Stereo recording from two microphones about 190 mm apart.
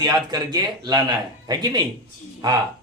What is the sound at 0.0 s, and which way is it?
A man's voice, 20° right (ahead or behind).